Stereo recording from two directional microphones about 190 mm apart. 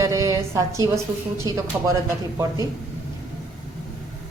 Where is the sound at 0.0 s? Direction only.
15° right (ahead or behind).